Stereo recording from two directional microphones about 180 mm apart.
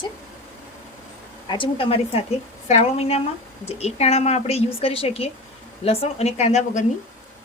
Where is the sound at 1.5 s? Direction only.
30° left (ahead or behind).